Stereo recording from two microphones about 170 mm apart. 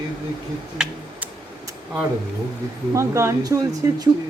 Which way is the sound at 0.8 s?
5° right (ahead or behind).